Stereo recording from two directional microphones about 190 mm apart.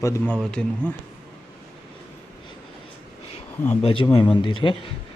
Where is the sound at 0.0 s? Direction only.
15° left (ahead or behind).